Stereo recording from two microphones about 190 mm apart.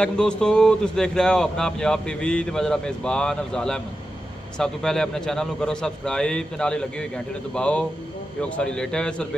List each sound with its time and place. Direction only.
0.0 s speech: 5° left (ahead or behind)